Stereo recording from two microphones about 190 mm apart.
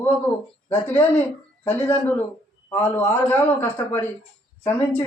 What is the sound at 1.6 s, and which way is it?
Speech, 10° left (ahead or behind).